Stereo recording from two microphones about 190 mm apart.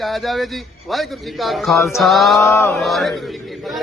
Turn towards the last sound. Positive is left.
turn(degrees=0)  # may be behind; listen again after turning